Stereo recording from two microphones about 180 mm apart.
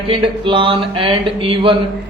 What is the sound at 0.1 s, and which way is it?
A man's voice, 30° right (ahead or behind).